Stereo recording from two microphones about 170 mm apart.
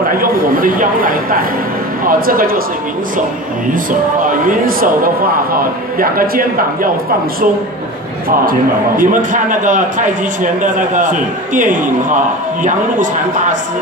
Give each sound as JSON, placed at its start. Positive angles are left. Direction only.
{"t": 0.2, "sound": "speech", "side_deg": -55}
{"t": 3.7, "sound": "speech", "side_deg": -55}
{"t": 8.5, "sound": "a man's voice", "side_deg": -55}